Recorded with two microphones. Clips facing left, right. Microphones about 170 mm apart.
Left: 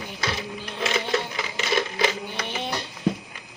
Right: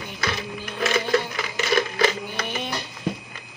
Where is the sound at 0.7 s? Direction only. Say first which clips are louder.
Right 3 dB; 20° left (ahead or behind).